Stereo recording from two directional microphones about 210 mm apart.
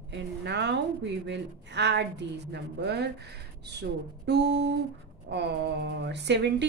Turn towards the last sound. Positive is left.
turn(degrees=-55)  # may be behind; listen again after turning